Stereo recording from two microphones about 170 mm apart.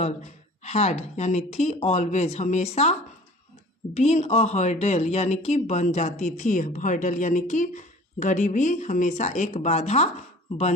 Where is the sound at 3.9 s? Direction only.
40° left (ahead or behind).